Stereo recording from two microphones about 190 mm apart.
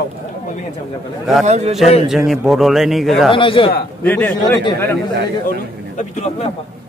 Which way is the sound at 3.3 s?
25° left (ahead or behind).